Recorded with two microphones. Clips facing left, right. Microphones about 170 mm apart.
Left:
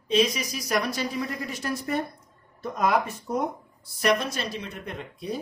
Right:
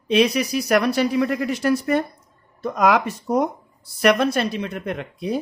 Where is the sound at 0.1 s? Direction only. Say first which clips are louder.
Right 6 dB; 65° right (ahead or behind); by 3.4 s 85° right.